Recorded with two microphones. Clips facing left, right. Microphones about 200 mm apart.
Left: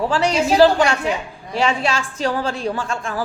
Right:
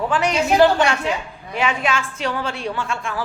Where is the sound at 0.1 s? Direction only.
30° left (ahead or behind).